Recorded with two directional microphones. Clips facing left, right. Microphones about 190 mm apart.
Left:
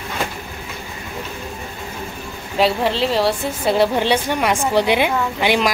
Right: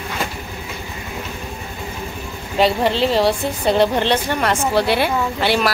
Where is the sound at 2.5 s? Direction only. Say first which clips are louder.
Right 1 dB; centre (ahead or behind).